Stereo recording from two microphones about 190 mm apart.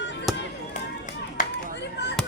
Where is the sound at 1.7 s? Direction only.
65° left (ahead or behind).